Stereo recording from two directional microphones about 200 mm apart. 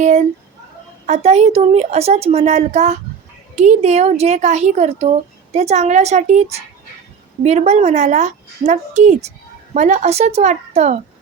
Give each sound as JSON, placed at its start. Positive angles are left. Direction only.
{"t": 0.0, "sound": "a sound", "side_deg": -35}
{"t": 1.0, "sound": "a woman's voice", "side_deg": -35}
{"t": 7.4, "sound": "a woman's voice", "side_deg": -35}